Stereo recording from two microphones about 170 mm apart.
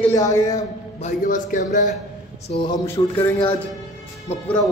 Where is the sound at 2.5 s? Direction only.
30° left (ahead or behind).